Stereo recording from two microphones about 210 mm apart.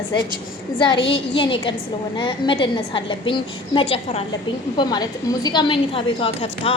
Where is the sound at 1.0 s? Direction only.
25° left (ahead or behind).